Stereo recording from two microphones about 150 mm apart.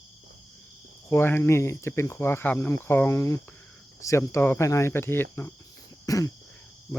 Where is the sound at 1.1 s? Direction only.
15° left (ahead or behind).